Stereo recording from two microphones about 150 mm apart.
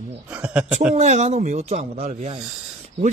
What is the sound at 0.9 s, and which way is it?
Speech, 50° right (ahead or behind).